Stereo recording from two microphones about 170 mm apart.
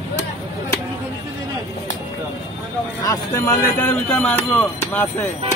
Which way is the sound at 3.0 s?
20° left (ahead or behind).